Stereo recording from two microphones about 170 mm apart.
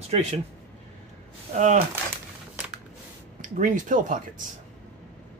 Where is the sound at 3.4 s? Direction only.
50° right (ahead or behind).